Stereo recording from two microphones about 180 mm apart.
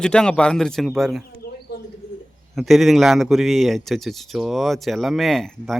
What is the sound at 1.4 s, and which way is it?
Bird, 60° left (ahead or behind).